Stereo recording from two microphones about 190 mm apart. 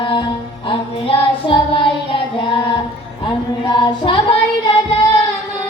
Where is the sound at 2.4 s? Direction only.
25° left (ahead or behind).